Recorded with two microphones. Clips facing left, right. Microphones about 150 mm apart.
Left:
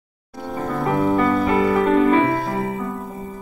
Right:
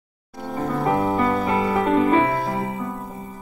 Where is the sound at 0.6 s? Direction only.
15° right (ahead or behind).